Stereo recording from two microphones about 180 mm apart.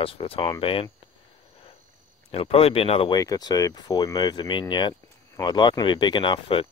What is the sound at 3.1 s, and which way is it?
Speech, 20° left (ahead or behind).